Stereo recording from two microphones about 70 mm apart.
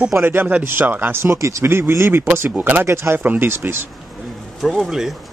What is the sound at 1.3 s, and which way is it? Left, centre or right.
Speech, right.